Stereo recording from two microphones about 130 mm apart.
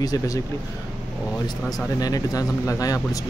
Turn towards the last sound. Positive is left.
turn(degrees=25)  # may be behind; listen again after turning